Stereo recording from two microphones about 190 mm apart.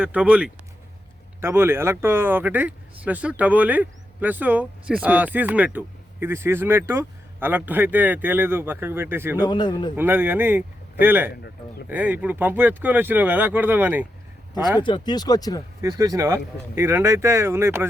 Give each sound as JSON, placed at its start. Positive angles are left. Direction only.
{"t": 0.0, "sound": "speech", "side_deg": -5}
{"t": 9.4, "sound": "speech", "side_deg": 25}
{"t": 9.9, "sound": "speech", "side_deg": -10}
{"t": 14.8, "sound": "speech", "side_deg": 25}
{"t": 15.8, "sound": "speech", "side_deg": -20}